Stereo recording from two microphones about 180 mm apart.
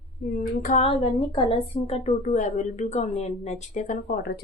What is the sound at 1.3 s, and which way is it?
Speech, 30° left (ahead or behind).